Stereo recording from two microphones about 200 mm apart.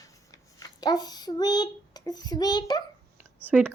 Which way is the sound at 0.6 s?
20° left (ahead or behind).